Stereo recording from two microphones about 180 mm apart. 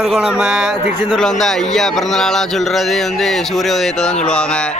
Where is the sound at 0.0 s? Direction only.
Centre (ahead or behind).